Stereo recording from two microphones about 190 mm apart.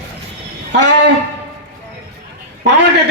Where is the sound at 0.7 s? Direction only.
65° right (ahead or behind).